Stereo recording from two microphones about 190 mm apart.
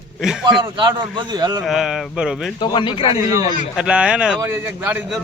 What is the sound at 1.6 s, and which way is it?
Speech, centre (ahead or behind).